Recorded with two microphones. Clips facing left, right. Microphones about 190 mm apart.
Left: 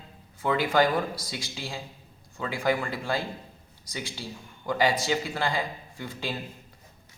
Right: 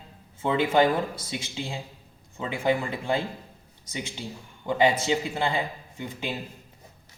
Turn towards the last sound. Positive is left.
turn(degrees=-20)  # may be behind; listen again after turning